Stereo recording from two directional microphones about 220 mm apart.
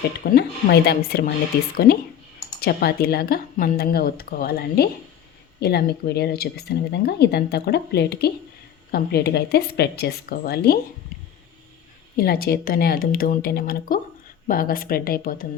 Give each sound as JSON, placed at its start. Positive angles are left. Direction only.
{"t": 0.3, "sound": "speech", "side_deg": 45}
{"t": 12.2, "sound": "speech", "side_deg": 45}